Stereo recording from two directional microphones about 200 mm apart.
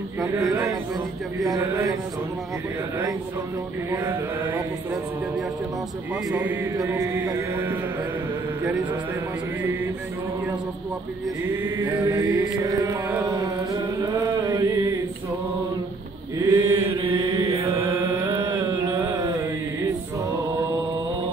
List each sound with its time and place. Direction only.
0.5 s music: 15° right (ahead or behind)
3.9 s music: 10° right (ahead or behind)
6.3 s music: 10° right (ahead or behind)
11.6 s music: 15° right (ahead or behind)
12.7 s chant: 10° right (ahead or behind)
16.4 s chant: 15° right (ahead or behind)
17.0 s chant: 25° right (ahead or behind)